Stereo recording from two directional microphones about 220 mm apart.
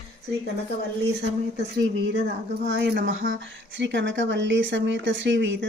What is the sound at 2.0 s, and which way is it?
Speech, 55° right (ahead or behind).